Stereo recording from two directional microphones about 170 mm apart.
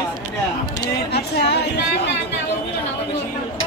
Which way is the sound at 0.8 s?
70° left (ahead or behind).